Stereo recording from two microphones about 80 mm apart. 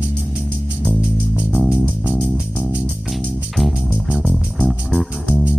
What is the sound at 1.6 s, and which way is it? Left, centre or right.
Music, centre.